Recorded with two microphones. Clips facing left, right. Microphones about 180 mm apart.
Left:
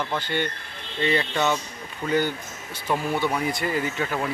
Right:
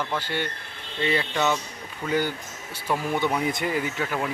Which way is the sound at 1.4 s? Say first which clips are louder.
Right 1 dB; 10° left (ahead or behind).